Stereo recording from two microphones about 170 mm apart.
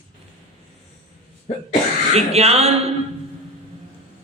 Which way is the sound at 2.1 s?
40° right (ahead or behind).